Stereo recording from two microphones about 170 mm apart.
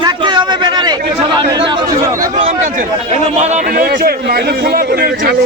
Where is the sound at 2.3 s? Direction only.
45° right (ahead or behind).